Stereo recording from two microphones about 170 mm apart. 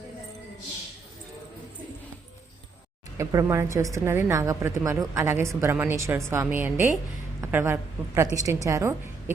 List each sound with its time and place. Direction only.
3.2 s a woman's voice: 20° right (ahead or behind)